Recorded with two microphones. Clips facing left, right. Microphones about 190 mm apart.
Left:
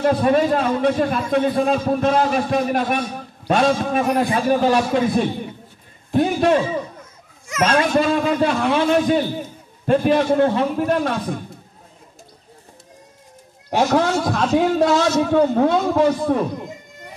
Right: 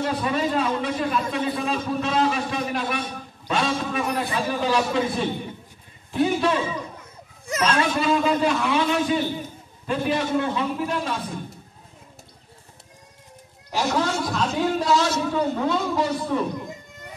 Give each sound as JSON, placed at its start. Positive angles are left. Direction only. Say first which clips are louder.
{"t": 0.0, "sound": "a man's voice", "louder": "left 8 dB", "side_deg": 50}
{"t": 13.7, "sound": "a man's voice", "louder": "left 6 dB", "side_deg": 55}